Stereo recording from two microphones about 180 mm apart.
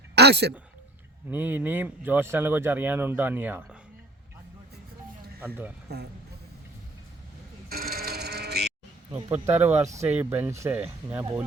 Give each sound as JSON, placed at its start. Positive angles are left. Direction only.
{"t": 0.2, "sound": "speech", "side_deg": -65}
{"t": 1.3, "sound": "speech", "side_deg": -10}
{"t": 5.9, "sound": "speech", "side_deg": -65}
{"t": 7.7, "sound": "sheep", "side_deg": -55}
{"t": 9.3, "sound": "speech", "side_deg": -10}